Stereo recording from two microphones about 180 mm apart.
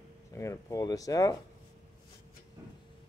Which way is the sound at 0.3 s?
15° left (ahead or behind).